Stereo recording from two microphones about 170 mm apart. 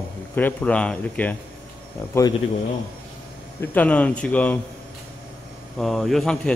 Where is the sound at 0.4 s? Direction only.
10° left (ahead or behind).